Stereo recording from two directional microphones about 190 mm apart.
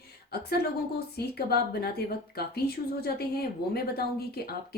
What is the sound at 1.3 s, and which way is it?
Speech, 55° left (ahead or behind).